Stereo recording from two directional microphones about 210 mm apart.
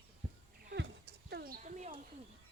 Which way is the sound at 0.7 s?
50° right (ahead or behind).